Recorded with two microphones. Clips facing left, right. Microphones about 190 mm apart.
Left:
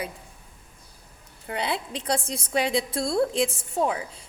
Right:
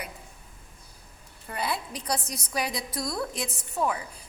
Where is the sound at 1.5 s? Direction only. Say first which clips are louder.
Left 3 dB; 25° left (ahead or behind).